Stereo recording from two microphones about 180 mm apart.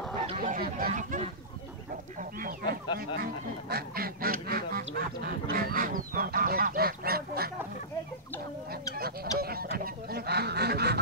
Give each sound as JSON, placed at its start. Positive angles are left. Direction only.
{"t": 0.4, "sound": "speech", "side_deg": -50}
{"t": 3.7, "sound": "duck", "side_deg": -55}
{"t": 8.9, "sound": "duck", "side_deg": -55}